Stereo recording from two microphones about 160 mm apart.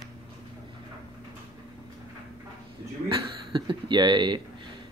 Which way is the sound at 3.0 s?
30° right (ahead or behind).